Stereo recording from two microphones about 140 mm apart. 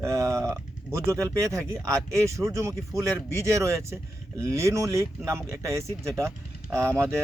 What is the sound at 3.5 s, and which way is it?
Speech, 20° right (ahead or behind).